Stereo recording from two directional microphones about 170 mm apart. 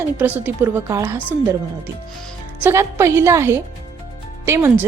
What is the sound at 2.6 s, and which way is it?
A woman's voice, 15° right (ahead or behind).